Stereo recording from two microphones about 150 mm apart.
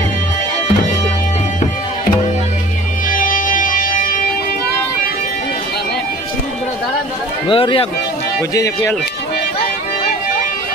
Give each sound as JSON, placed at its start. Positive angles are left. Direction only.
{"t": 3.1, "sound": "music", "side_deg": 65}
{"t": 7.4, "sound": "speech", "side_deg": 35}
{"t": 8.4, "sound": "speech", "side_deg": 20}